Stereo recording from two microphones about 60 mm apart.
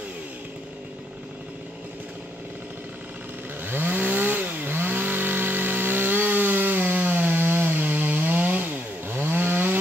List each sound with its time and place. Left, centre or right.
3.6 s chainsaw: right